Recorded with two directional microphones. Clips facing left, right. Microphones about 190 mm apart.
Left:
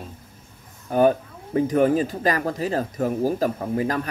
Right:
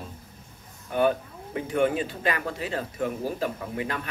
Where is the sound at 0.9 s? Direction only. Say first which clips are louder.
Left 5 dB; 40° left (ahead or behind).